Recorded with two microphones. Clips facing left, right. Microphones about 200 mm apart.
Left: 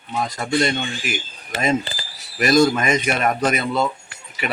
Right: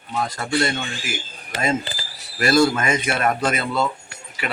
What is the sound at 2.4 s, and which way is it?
Speech, 15° left (ahead or behind).